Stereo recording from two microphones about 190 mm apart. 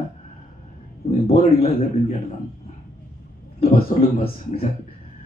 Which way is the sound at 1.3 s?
30° left (ahead or behind).